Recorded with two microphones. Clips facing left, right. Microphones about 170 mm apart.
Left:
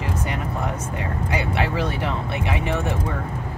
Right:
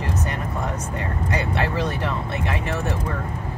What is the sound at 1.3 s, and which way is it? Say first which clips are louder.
Vehicle: even; 10° left (ahead or behind).